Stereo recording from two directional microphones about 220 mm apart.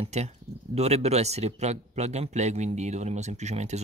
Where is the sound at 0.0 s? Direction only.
30° right (ahead or behind).